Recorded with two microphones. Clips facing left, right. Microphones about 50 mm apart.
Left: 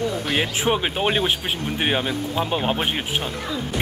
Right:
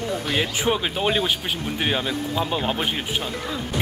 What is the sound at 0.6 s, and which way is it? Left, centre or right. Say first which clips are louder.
Speech: left 1 dB; left.